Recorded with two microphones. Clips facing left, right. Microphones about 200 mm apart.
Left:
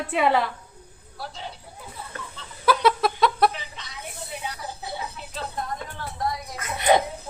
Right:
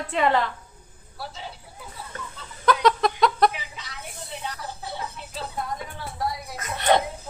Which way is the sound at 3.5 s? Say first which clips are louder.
Even; 10° right (ahead or behind).